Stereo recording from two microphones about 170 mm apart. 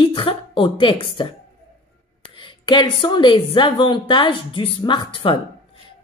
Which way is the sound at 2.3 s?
30° left (ahead or behind).